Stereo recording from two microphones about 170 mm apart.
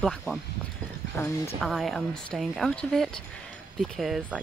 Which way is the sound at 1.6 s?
Centre (ahead or behind).